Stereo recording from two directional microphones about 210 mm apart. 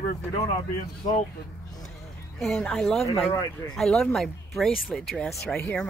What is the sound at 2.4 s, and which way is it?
Speech, 5° left (ahead or behind).